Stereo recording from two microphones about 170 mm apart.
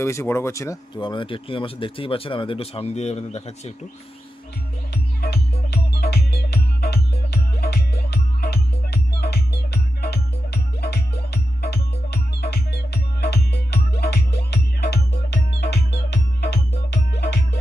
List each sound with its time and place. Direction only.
0.0 s speech: 15° left (ahead or behind); by 3.7 s 40° left (ahead or behind)
4.9 s music: 70° left (ahead or behind)